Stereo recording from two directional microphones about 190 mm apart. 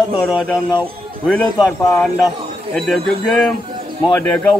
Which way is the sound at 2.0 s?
Centre (ahead or behind).